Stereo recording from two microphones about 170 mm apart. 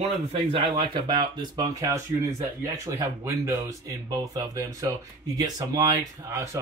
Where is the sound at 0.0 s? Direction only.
35° right (ahead or behind).